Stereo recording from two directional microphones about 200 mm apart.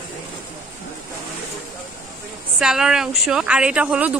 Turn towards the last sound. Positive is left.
turn(degrees=-5)  # may be behind; listen again after turning